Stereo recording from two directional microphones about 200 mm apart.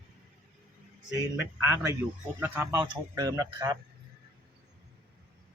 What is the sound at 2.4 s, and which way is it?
Speech, 10° right (ahead or behind).